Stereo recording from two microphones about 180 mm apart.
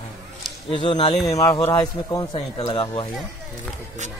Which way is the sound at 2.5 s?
30° left (ahead or behind).